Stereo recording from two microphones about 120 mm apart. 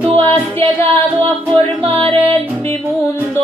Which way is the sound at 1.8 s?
45° right (ahead or behind).